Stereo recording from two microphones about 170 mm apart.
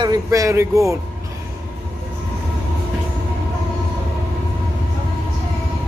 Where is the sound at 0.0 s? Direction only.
20° right (ahead or behind).